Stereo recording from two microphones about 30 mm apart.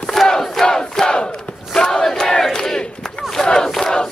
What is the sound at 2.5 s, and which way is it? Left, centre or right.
Battle cry, left.